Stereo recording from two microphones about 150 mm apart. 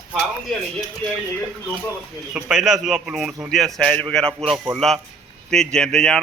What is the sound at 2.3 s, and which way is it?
A man's voice, 5° right (ahead or behind).